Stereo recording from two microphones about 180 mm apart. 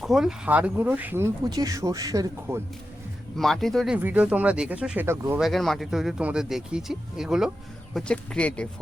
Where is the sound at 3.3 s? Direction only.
Centre (ahead or behind).